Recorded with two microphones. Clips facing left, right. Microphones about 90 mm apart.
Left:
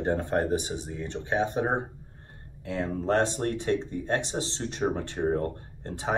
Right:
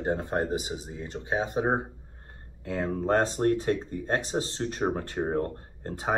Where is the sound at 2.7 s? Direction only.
45° right (ahead or behind).